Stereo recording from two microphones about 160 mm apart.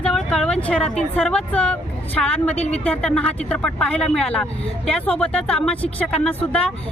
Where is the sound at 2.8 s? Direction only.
5° left (ahead or behind).